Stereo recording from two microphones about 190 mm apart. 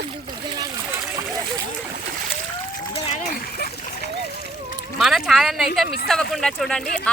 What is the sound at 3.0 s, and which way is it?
Splash, 40° left (ahead or behind).